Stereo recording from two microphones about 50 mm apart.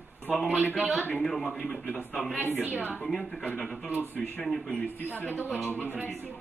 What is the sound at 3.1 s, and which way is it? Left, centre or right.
Speech, centre.